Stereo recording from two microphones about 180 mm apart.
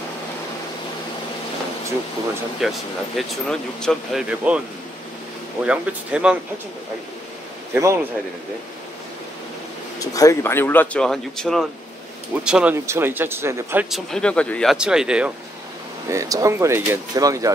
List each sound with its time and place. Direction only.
2.6 s speech: centre (ahead or behind)
5.7 s speech: 5° right (ahead or behind)
7.8 s speech: 15° right (ahead or behind)
9.9 s speech: 20° left (ahead or behind); by 13.8 s 15° right (ahead or behind)
13.8 s speech: centre (ahead or behind)
16.1 s speech: 15° right (ahead or behind)